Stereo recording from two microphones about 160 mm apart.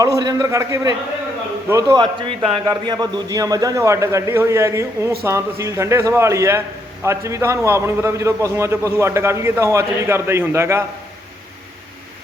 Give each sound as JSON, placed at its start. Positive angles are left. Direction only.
{"t": 0.0, "sound": "a man's voice", "side_deg": -20}
{"t": 2.1, "sound": "a man's voice", "side_deg": -35}